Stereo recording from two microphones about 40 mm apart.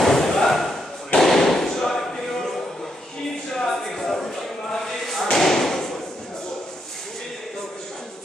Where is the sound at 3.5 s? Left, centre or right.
Centre.